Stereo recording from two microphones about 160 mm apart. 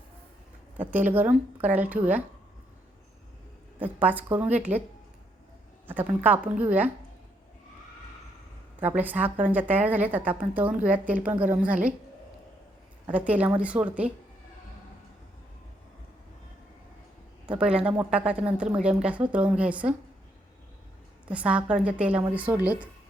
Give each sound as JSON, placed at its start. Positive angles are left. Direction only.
{"t": 0.8, "sound": "a woman's voice", "side_deg": -10}
{"t": 3.8, "sound": "a woman's voice", "side_deg": -10}
{"t": 6.2, "sound": "a woman's voice", "side_deg": -10}
{"t": 8.8, "sound": "a woman's voice", "side_deg": -10}
{"t": 13.1, "sound": "a woman's voice", "side_deg": -10}
{"t": 17.4, "sound": "a man's voice", "side_deg": -5}
{"t": 21.2, "sound": "a woman's voice", "side_deg": -10}